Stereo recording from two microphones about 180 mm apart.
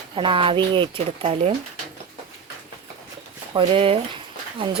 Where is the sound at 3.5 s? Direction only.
30° right (ahead or behind).